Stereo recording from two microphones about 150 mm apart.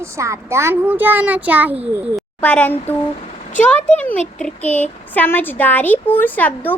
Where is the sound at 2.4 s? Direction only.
10° left (ahead or behind).